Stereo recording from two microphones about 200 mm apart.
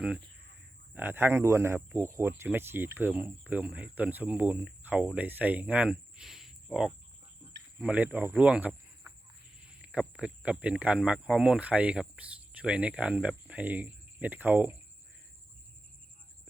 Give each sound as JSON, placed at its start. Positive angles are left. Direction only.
{"t": 0.9, "sound": "speech", "side_deg": -10}